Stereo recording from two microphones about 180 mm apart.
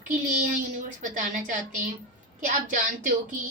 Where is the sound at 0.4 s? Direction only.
45° right (ahead or behind).